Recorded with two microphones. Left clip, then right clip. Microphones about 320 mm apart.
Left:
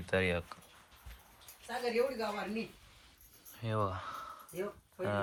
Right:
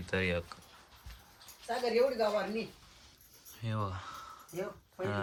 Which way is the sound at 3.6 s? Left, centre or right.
Centre.